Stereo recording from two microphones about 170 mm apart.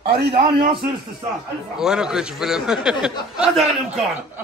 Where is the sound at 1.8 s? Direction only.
5° right (ahead or behind).